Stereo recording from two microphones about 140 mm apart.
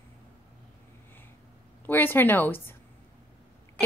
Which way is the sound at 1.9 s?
15° left (ahead or behind).